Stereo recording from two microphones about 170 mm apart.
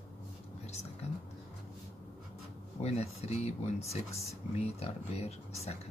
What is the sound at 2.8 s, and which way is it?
Speech, 40° left (ahead or behind).